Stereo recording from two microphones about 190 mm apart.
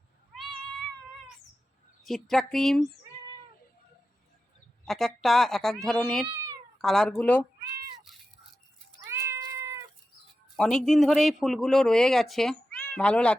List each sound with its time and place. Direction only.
2.0 s speech: centre (ahead or behind)
4.9 s speech: centre (ahead or behind)
9.0 s cat: 15° right (ahead or behind)
10.6 s speech: 5° left (ahead or behind)